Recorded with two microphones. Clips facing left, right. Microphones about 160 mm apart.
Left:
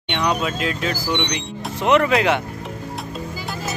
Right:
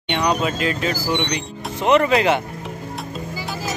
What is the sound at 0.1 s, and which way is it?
Speech, centre (ahead or behind).